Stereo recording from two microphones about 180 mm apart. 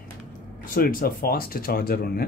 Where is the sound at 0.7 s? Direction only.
55° left (ahead or behind).